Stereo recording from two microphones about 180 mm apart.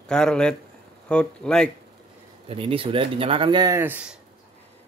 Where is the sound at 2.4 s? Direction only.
30° right (ahead or behind); by 4.2 s 5° right (ahead or behind).